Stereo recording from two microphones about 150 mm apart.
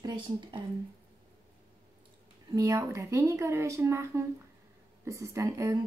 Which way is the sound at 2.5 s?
25° right (ahead or behind).